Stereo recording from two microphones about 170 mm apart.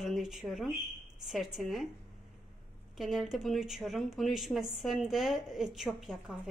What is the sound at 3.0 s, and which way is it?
Speech, centre (ahead or behind).